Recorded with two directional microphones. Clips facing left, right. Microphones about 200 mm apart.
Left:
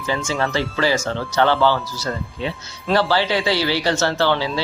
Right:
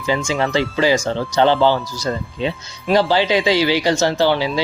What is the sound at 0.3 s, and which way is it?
Speech, 15° right (ahead or behind).